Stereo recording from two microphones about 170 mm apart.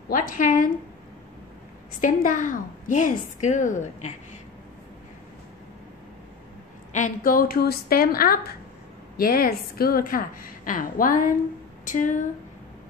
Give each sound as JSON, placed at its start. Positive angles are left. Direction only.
{"t": 0.1, "sound": "speech", "side_deg": 50}
{"t": 2.0, "sound": "a woman's voice", "side_deg": 50}
{"t": 6.9, "sound": "a woman's voice", "side_deg": 50}